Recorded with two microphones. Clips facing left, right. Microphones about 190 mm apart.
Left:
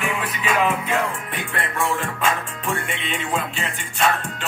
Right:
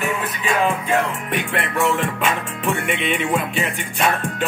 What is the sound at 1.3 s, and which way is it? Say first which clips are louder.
Music: right 5 dB; 70° right (ahead or behind).